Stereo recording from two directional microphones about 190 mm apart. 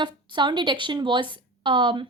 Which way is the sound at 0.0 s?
25° right (ahead or behind).